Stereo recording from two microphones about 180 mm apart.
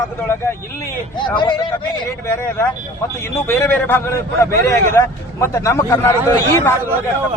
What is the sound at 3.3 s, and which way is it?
A man's voice, 15° left (ahead or behind).